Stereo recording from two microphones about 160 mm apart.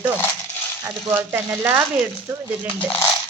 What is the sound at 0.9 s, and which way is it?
Speech, 15° right (ahead or behind).